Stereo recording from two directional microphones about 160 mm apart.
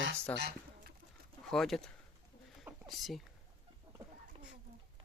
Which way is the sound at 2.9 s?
Centre (ahead or behind).